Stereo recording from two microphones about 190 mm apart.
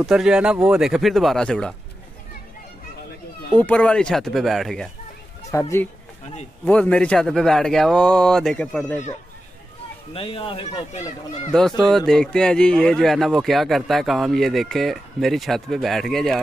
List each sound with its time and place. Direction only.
0.0 s speech: 5° right (ahead or behind)
3.5 s speech: 10° left (ahead or behind)
5.5 s speech: 15° left (ahead or behind)
10.1 s speech: 30° left (ahead or behind)
11.5 s speech: centre (ahead or behind)